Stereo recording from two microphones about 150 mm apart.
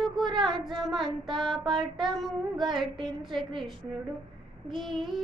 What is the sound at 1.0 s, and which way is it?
Child singing, 30° right (ahead or behind).